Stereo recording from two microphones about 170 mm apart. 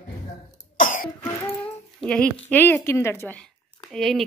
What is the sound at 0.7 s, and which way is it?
Cough, 50° left (ahead or behind).